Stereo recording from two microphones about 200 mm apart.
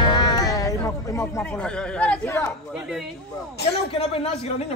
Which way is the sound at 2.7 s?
5° right (ahead or behind).